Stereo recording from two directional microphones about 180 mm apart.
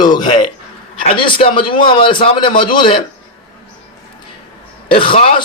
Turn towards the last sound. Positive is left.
turn(degrees=35)  # may be behind; listen again after turning